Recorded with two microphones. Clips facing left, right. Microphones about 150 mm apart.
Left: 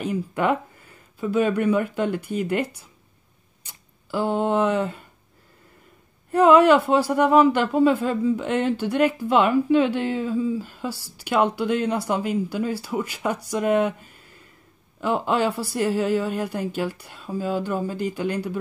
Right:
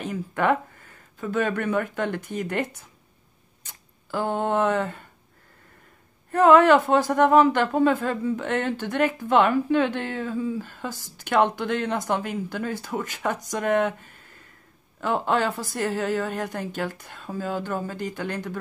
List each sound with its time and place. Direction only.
0.0 s speech: 15° left (ahead or behind)
4.3 s speech: 10° left (ahead or behind)
6.3 s speech: 10° left (ahead or behind)
10.9 s speech: 15° right (ahead or behind)
11.2 s speech: 10° left (ahead or behind)
15.0 s speech: 10° left (ahead or behind)